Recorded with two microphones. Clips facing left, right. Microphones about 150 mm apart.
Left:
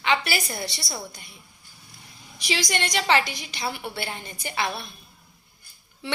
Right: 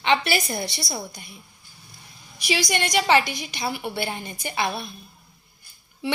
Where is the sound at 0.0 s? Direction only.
20° right (ahead or behind).